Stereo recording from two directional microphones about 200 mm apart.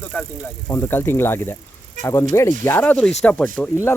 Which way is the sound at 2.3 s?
15° left (ahead or behind).